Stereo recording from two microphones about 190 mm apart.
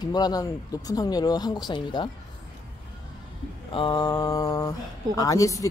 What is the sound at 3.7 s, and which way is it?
A woman's voice, 25° left (ahead or behind).